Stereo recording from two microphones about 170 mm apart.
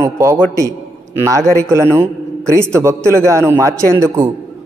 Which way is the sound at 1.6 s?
15° right (ahead or behind).